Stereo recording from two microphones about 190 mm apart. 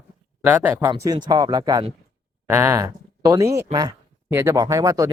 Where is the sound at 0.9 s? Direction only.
20° right (ahead or behind).